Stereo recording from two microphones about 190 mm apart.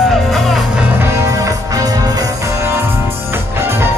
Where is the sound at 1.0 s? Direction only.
15° right (ahead or behind).